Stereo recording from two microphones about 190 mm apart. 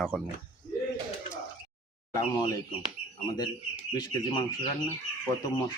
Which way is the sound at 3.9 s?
20° left (ahead or behind).